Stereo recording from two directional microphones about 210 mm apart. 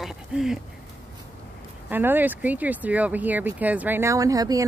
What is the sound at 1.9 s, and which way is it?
Speech, 10° right (ahead or behind).